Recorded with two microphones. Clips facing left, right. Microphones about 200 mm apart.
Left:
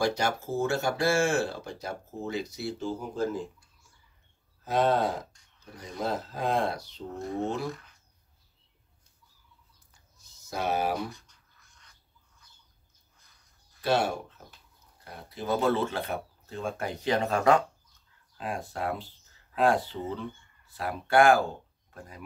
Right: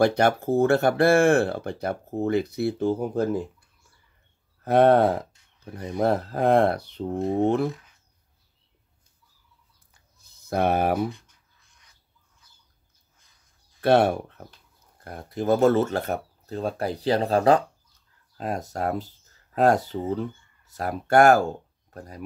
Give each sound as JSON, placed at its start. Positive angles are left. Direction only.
{"t": 0.0, "sound": "speech", "side_deg": -60}
{"t": 4.6, "sound": "speech", "side_deg": -60}
{"t": 10.1, "sound": "speech", "side_deg": -60}
{"t": 13.7, "sound": "speech", "side_deg": -60}
{"t": 15.0, "sound": "speech", "side_deg": -50}